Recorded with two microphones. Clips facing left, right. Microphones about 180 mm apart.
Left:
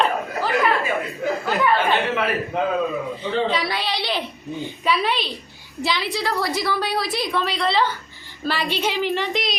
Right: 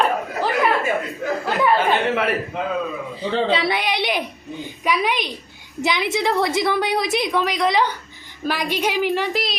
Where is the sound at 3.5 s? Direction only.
25° right (ahead or behind).